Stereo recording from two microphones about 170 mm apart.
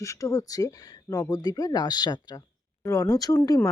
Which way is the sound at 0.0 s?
20° left (ahead or behind).